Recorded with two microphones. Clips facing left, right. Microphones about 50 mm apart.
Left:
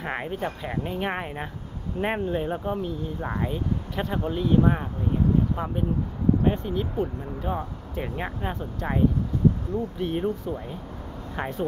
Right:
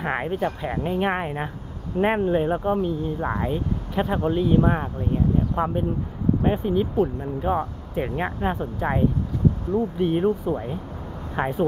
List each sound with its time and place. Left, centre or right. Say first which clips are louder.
0.0 s speech: right 5 dB; centre